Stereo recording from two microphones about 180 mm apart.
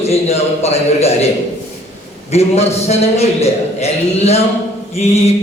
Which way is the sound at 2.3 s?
35° left (ahead or behind).